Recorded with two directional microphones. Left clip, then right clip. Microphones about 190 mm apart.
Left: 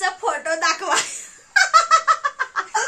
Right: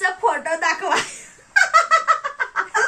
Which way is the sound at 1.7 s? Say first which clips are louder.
Left 2 dB; 30° left (ahead or behind).